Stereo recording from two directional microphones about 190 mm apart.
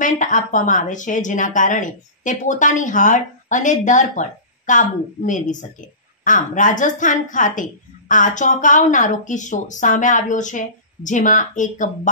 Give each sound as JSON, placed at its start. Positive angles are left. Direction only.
{"t": 0.0, "sound": "a woman's voice", "side_deg": 40}